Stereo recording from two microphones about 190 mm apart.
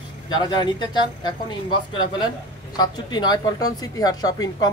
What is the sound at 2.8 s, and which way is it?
A man's voice, 20° left (ahead or behind).